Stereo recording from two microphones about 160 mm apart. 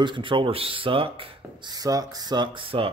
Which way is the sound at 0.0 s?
30° right (ahead or behind).